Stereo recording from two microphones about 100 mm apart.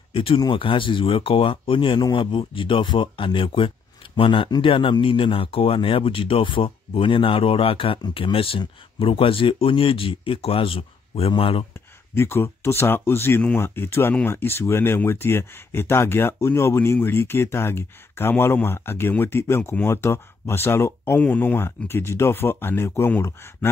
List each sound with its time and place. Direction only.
0.1 s speech: 65° left (ahead or behind)
12.2 s speech: 25° left (ahead or behind)